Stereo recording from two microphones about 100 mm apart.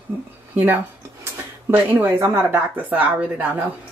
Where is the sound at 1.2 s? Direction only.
20° right (ahead or behind).